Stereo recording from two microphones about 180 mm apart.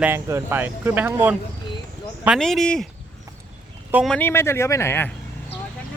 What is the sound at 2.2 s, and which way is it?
Speech, centre (ahead or behind).